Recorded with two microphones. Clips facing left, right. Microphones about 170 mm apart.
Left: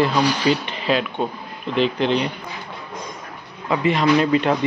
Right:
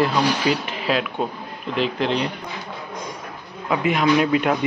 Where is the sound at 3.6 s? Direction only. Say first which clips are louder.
Left 1 dB; 5° right (ahead or behind).